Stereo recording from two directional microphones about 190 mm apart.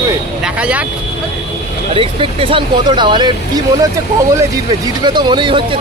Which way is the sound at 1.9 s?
30° right (ahead or behind).